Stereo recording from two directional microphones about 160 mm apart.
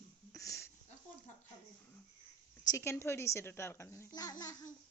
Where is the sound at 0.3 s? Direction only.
20° left (ahead or behind).